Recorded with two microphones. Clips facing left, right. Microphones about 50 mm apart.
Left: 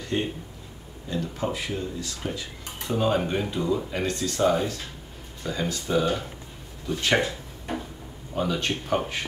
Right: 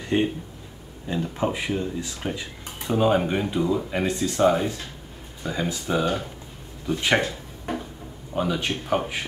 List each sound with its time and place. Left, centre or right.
0.0 s speech: right
7.2 s drawer open or close: centre
8.4 s speech: centre